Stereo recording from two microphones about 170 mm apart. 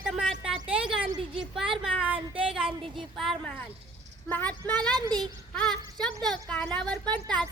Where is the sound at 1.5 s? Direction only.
5° right (ahead or behind).